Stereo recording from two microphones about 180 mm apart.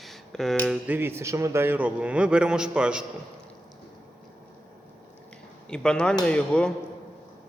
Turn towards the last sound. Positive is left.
turn(degrees=5)  # may be behind; listen again after turning